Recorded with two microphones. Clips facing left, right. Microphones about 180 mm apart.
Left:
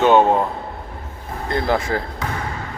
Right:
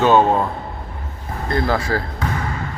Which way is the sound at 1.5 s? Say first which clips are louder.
Even; 20° left (ahead or behind).